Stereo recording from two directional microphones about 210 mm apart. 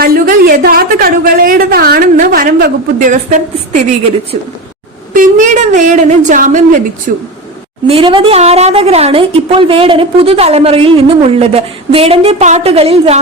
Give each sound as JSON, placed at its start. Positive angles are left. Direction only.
{"t": 0.0, "sound": "a woman's voice", "side_deg": -45}
{"t": 5.1, "sound": "a woman's voice", "side_deg": -40}
{"t": 7.9, "sound": "a woman's voice", "side_deg": -25}